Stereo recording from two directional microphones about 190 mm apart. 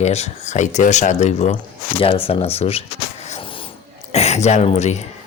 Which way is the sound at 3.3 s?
30° left (ahead or behind).